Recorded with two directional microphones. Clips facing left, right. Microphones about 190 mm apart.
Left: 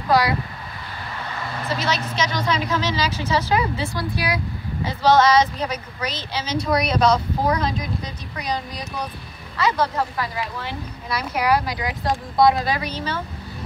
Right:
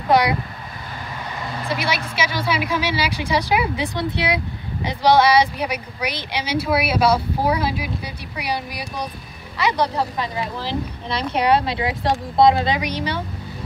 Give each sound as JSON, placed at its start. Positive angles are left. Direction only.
{"t": 0.1, "sound": "speech", "side_deg": -20}
{"t": 1.7, "sound": "a woman's voice", "side_deg": -10}
{"t": 4.8, "sound": "a woman's voice", "side_deg": -10}